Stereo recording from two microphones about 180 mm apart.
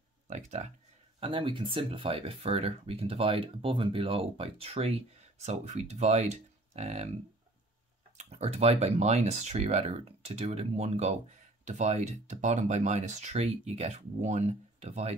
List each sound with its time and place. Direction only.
0.3 s speech: 40° right (ahead or behind)
1.2 s speech: 30° right (ahead or behind)
8.2 s speech: 35° right (ahead or behind)